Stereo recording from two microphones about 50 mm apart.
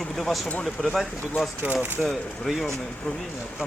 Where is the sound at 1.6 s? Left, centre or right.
Right.